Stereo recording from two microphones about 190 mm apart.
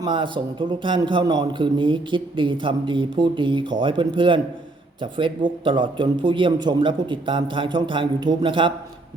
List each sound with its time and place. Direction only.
0.0 s a man's voice: 25° right (ahead or behind)